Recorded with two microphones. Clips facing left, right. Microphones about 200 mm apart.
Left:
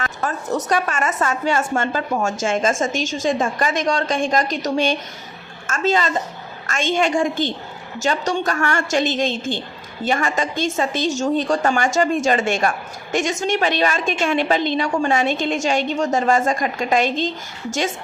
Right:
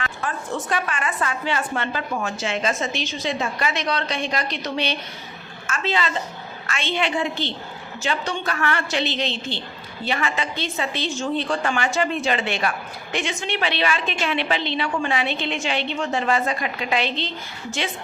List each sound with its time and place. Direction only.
0.0 s a woman's voice: 40° left (ahead or behind)